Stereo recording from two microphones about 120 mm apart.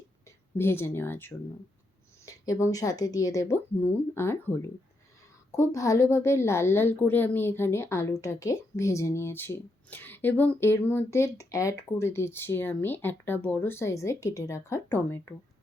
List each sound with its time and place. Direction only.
0.5 s a woman's voice: 20° left (ahead or behind)
2.2 s a woman's voice: 30° left (ahead or behind)